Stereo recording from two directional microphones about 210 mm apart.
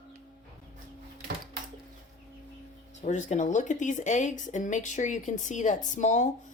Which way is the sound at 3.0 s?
35° left (ahead or behind).